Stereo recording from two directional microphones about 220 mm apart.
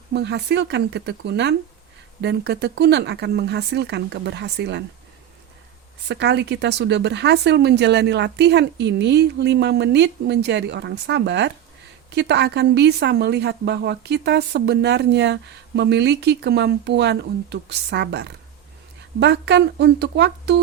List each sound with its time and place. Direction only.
0.1 s a woman's voice: 50° right (ahead or behind)
6.1 s a woman's voice: 50° right (ahead or behind)